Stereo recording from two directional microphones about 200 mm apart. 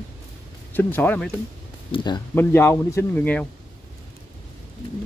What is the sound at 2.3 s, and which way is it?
Speech, 10° left (ahead or behind).